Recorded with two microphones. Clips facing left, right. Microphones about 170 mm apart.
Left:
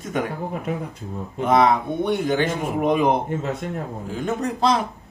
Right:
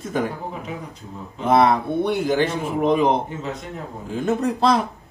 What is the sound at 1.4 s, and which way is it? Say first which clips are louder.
Speech: right 1 dB; 5° right (ahead or behind).